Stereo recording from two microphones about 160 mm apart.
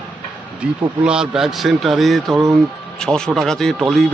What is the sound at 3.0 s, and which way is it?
Speech, 5° left (ahead or behind).